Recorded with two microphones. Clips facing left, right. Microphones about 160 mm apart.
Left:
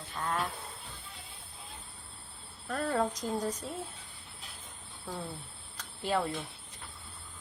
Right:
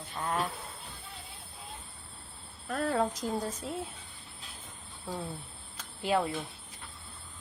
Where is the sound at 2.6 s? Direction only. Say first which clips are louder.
Right 1 dB; 5° right (ahead or behind).